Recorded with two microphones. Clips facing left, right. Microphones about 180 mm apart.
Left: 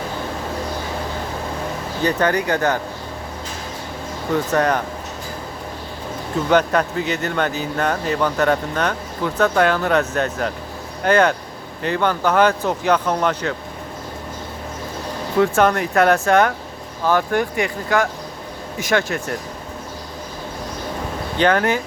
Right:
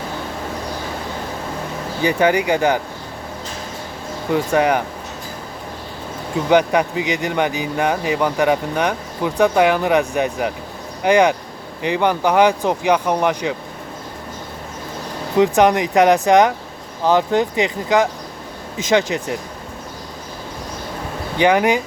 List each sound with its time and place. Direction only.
2.0 s speech: 10° right (ahead or behind)
4.5 s speech: 10° right (ahead or behind)
6.5 s speech: 15° right (ahead or behind)
15.4 s speech: 15° right (ahead or behind)
21.3 s speech: 15° right (ahead or behind)